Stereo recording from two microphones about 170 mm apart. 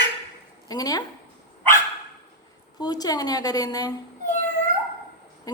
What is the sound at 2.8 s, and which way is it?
A woman's voice, 25° left (ahead or behind).